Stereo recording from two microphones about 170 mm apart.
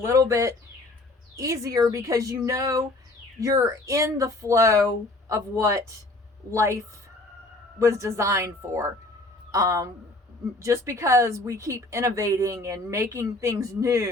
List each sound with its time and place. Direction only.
0.0 s speech: 15° right (ahead or behind)